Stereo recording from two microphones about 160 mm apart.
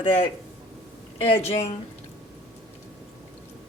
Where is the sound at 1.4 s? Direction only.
40° left (ahead or behind).